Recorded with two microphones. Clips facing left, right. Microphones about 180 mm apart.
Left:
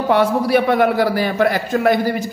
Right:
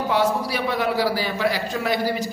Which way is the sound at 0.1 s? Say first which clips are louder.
Left 8 dB; 55° left (ahead or behind).